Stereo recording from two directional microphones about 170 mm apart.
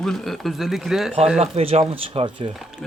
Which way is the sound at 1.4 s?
35° right (ahead or behind).